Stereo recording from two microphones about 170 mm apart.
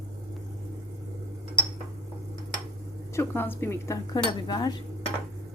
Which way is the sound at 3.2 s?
10° left (ahead or behind).